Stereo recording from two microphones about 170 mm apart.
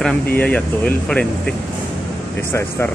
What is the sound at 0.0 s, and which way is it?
Speech, 10° left (ahead or behind).